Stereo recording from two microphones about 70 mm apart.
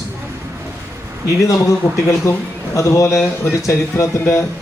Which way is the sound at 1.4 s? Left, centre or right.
Left.